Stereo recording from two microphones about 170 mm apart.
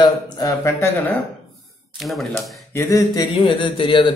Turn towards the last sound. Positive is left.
turn(degrees=30)  # may be behind; listen again after turning